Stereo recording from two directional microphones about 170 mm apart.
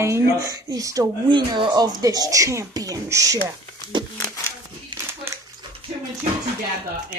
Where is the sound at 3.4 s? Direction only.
25° right (ahead or behind).